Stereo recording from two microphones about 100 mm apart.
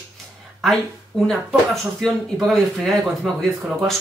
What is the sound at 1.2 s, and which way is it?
Speech, 5° left (ahead or behind).